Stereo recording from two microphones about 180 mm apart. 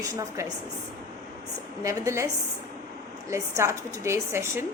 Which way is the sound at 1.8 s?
15° right (ahead or behind).